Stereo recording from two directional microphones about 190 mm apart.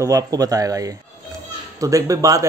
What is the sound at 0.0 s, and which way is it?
A man's voice, 20° right (ahead or behind).